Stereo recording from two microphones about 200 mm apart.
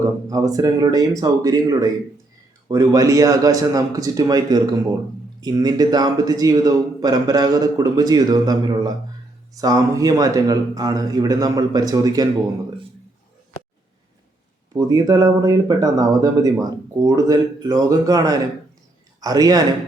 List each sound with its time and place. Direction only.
0.0 s a man's voice: 15° right (ahead or behind)
14.7 s a man's voice: 15° right (ahead or behind)